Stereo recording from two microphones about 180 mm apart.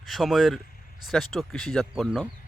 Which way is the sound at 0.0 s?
Centre (ahead or behind).